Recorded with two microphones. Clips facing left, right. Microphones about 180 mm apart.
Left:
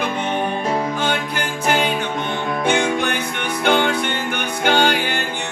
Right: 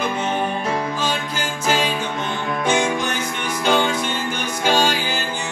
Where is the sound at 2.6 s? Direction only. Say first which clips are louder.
Left 1 dB; 60° left (ahead or behind).